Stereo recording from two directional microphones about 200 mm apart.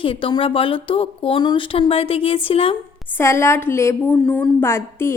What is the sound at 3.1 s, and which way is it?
A woman's voice, 15° left (ahead or behind).